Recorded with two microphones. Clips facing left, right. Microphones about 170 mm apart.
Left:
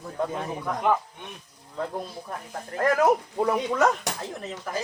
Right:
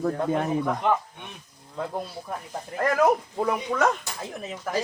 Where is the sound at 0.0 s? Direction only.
65° right (ahead or behind).